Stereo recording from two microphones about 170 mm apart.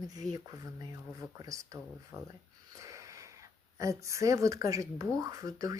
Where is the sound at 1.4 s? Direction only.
20° right (ahead or behind).